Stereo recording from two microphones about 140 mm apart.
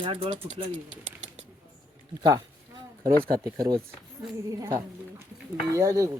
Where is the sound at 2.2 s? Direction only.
30° right (ahead or behind).